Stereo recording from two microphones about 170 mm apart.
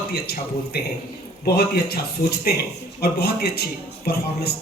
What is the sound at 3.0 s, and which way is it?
A man's voice, 70° left (ahead or behind).